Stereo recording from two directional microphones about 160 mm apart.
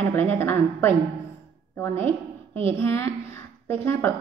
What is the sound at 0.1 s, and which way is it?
A woman's voice, 15° left (ahead or behind).